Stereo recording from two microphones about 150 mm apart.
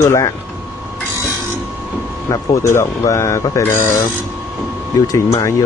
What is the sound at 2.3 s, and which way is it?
Speech, 20° left (ahead or behind).